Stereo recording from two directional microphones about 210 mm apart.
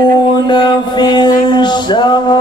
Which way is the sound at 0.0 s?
20° left (ahead or behind).